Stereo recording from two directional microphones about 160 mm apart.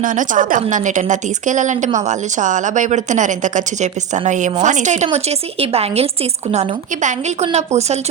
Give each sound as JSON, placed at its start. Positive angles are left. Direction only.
{"t": 0.0, "sound": "a woman's voice", "side_deg": -55}